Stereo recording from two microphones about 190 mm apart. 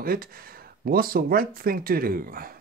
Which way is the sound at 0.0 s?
50° right (ahead or behind).